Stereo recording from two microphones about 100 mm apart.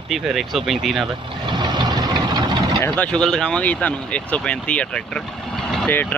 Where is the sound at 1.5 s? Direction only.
45° right (ahead or behind).